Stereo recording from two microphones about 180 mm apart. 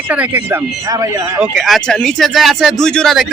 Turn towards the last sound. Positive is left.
turn(degrees=0)  # may be behind; listen again after turning